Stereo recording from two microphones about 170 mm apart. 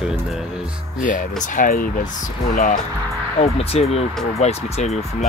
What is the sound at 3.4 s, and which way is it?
Speech, 35° left (ahead or behind).